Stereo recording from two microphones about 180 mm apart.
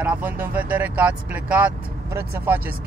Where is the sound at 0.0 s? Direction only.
10° right (ahead or behind).